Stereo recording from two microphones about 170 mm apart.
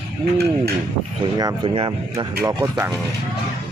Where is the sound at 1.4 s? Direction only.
25° right (ahead or behind).